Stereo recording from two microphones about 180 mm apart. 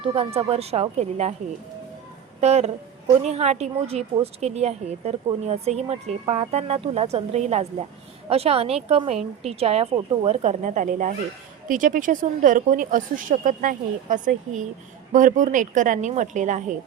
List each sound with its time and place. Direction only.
0.0 s a woman's voice: 30° right (ahead or behind)
2.4 s a woman's voice: 35° right (ahead or behind)